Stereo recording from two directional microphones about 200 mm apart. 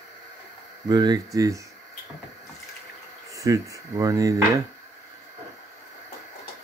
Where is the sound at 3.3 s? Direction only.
15° right (ahead or behind).